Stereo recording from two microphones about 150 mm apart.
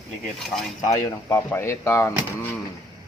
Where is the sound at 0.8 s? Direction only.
20° left (ahead or behind).